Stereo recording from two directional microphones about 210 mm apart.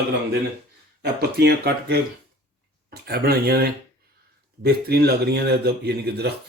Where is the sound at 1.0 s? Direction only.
50° right (ahead or behind).